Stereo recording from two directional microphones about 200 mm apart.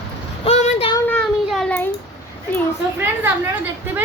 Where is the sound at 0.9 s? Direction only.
5° left (ahead or behind).